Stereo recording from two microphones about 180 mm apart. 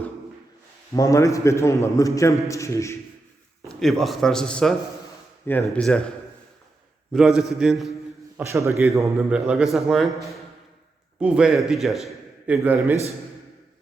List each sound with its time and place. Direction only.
0.9 s a man's voice: 20° left (ahead or behind)
3.7 s a man's voice: centre (ahead or behind)
7.1 s a man's voice: centre (ahead or behind)
8.4 s a man's voice: 15° right (ahead or behind)
9.3 s a man's voice: 5° right (ahead or behind)
12.5 s a man's voice: 10° right (ahead or behind)